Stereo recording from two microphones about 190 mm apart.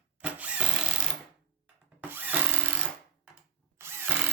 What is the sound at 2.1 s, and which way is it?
Drill, 10° right (ahead or behind).